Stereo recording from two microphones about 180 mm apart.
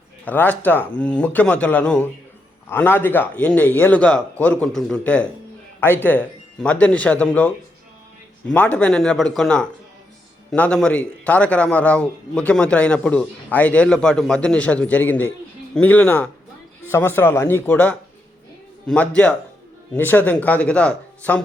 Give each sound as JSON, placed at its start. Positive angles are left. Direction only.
{"t": 0.3, "sound": "a man's voice", "side_deg": 10}
{"t": 8.5, "sound": "a man's voice", "side_deg": 10}